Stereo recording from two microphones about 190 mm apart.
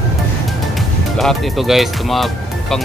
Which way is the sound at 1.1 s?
Centre (ahead or behind).